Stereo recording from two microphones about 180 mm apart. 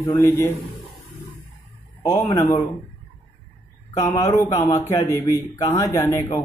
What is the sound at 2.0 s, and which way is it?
Speech, 20° left (ahead or behind).